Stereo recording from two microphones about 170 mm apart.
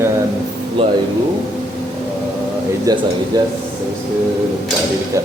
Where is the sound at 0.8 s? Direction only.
35° right (ahead or behind).